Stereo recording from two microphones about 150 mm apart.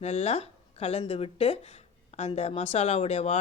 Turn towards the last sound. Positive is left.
turn(degrees=40)  # may be behind; listen again after turning